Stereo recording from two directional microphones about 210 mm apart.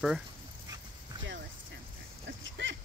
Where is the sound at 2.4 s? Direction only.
65° right (ahead or behind).